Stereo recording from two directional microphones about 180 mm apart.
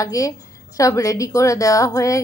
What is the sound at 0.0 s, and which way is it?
Speech, 20° left (ahead or behind).